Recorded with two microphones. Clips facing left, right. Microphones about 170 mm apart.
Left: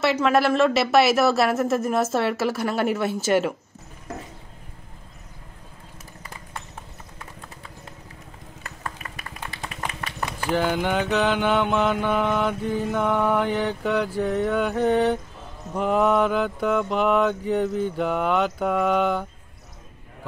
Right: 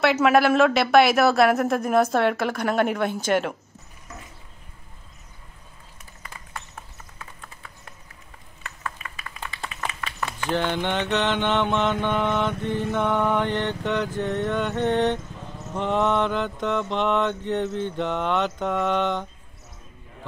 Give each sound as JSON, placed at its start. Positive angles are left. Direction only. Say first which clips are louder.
{"t": 0.0, "sound": "mantra", "louder": "right 2 dB", "side_deg": -5}
{"t": 8.6, "sound": "a sound", "louder": "even", "side_deg": 35}
{"t": 10.2, "sound": "mantra", "louder": "left 2 dB", "side_deg": 5}